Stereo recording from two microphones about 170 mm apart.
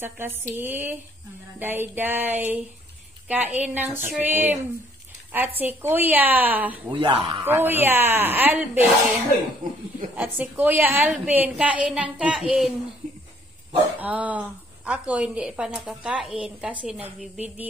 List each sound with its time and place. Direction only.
0.0 s a woman's voice: 15° right (ahead or behind)
6.9 s speech: 30° right (ahead or behind)
7.4 s a woman's voice: 10° right (ahead or behind)
10.1 s a woman's voice: 10° right (ahead or behind)
13.9 s a woman's voice: 10° right (ahead or behind)